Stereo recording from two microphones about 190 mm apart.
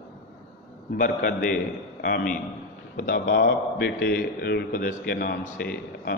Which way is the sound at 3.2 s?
65° left (ahead or behind).